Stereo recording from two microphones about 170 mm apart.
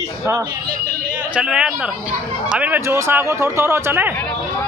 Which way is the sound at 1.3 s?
5° right (ahead or behind).